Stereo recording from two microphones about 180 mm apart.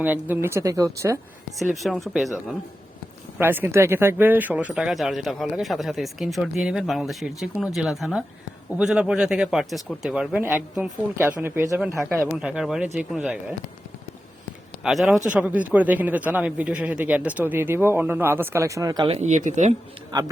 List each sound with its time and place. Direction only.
0.0 s a man's voice: 10° right (ahead or behind)
1.5 s speech: centre (ahead or behind)
3.3 s a man's voice: 10° right (ahead or behind)
12.4 s speech: 5° right (ahead or behind)
14.8 s a man's voice: centre (ahead or behind); by 19.7 s 40° right (ahead or behind)
20.1 s a man's voice: 25° right (ahead or behind)